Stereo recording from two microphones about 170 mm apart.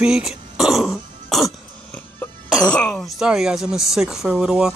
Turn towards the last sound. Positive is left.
turn(degrees=-5)  # may be behind; listen again after turning